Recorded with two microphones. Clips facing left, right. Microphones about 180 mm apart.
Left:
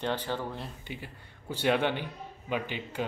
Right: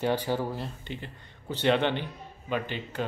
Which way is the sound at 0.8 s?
10° left (ahead or behind).